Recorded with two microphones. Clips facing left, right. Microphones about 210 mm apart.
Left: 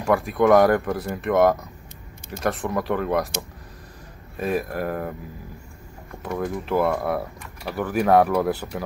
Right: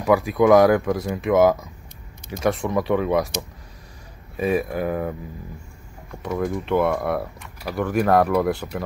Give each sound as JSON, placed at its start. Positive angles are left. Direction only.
{"t": 0.0, "sound": "speech", "side_deg": 0}
{"t": 4.4, "sound": "speech", "side_deg": 0}
{"t": 6.2, "sound": "speech", "side_deg": 0}